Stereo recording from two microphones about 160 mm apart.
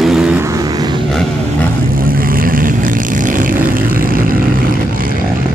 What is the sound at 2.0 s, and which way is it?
Vehicle, 65° right (ahead or behind).